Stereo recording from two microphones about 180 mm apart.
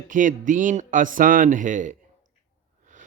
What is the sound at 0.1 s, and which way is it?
A man's voice, 45° right (ahead or behind).